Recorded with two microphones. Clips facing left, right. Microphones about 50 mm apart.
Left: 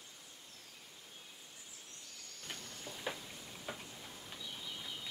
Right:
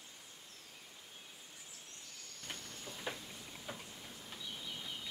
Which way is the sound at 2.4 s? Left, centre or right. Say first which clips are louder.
Even; centre.